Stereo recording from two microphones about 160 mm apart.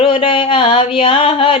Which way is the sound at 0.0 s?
35° left (ahead or behind).